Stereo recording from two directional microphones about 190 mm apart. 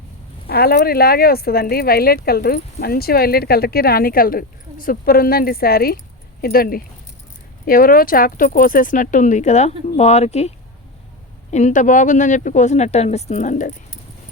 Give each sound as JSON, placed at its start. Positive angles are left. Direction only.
{"t": 0.4, "sound": "speech", "side_deg": 55}
{"t": 11.5, "sound": "speech", "side_deg": 40}